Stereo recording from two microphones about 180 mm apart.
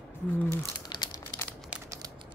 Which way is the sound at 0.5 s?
25° left (ahead or behind).